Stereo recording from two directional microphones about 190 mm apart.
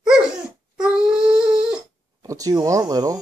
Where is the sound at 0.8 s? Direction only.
5° right (ahead or behind).